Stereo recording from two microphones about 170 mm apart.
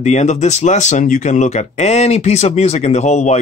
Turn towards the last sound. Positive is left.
turn(degrees=45)  # may be behind; listen again after turning